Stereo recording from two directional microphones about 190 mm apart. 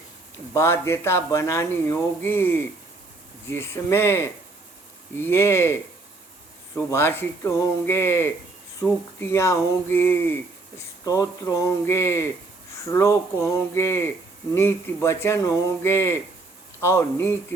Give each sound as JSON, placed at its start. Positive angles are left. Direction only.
{"t": 0.5, "sound": "speech", "side_deg": 15}
{"t": 6.7, "sound": "speech", "side_deg": 10}